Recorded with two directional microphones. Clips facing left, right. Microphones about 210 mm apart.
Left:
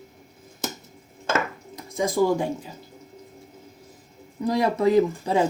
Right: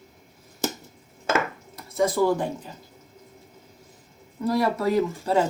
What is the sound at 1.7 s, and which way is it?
Speech, 15° left (ahead or behind).